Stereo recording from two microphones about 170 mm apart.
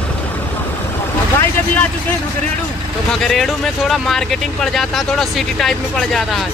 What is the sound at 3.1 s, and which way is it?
Speech, centre (ahead or behind).